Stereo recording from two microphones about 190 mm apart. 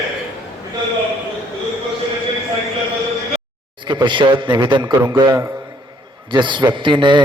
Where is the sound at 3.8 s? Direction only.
25° right (ahead or behind).